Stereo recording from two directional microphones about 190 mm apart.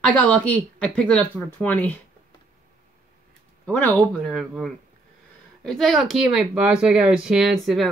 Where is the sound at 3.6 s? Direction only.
5° left (ahead or behind).